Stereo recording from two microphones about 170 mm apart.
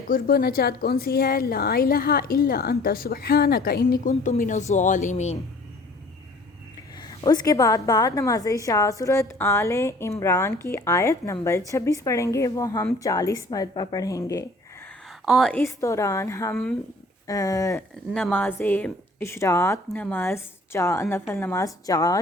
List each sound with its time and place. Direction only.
0.1 s a woman's voice: 60° left (ahead or behind)
4.2 s speech: 45° left (ahead or behind)
7.1 s a woman's voice: 20° left (ahead or behind)
15.2 s a woman's voice: centre (ahead or behind)
15.6 s a woman's voice: 15° left (ahead or behind)
18.1 s a woman's voice: 5° left (ahead or behind)